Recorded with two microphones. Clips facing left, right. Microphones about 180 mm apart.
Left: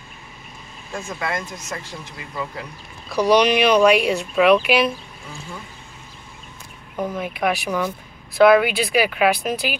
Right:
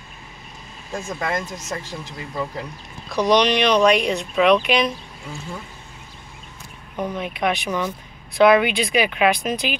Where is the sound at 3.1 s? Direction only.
10° left (ahead or behind).